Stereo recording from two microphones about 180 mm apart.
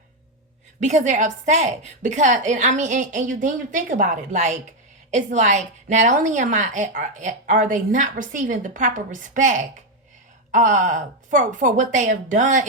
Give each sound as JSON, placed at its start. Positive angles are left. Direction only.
{"t": 0.8, "sound": "a woman's voice", "side_deg": -40}